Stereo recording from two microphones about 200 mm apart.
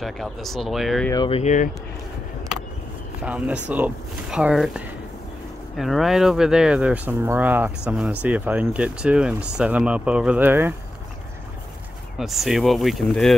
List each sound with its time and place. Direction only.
0.0 s speech: centre (ahead or behind)
1.1 s speech: 20° left (ahead or behind)
1.4 s speech: 35° left (ahead or behind)
3.2 s speech: 5° right (ahead or behind)
12.2 s speech: centre (ahead or behind)